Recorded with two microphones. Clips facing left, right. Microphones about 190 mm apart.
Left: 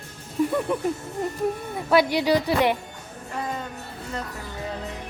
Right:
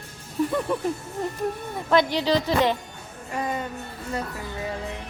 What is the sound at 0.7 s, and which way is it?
Speech, 10° left (ahead or behind).